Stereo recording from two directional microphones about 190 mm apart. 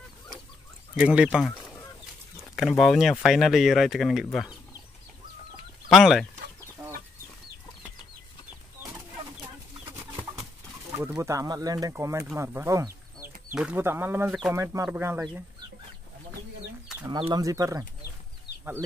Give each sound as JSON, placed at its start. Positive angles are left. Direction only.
{"t": 0.9, "sound": "speech", "side_deg": -5}
{"t": 2.8, "sound": "speech", "side_deg": 0}
{"t": 5.9, "sound": "speech", "side_deg": 0}
{"t": 11.0, "sound": "speech", "side_deg": -10}
{"t": 17.0, "sound": "speech", "side_deg": -20}